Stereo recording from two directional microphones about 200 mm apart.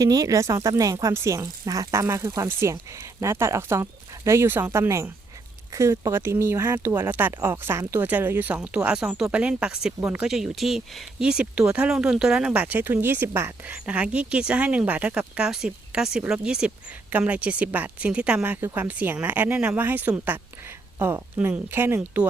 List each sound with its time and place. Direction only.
0.0 s speech: 15° right (ahead or behind)